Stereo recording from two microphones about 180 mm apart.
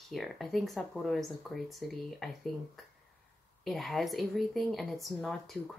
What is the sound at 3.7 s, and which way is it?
Speech, centre (ahead or behind).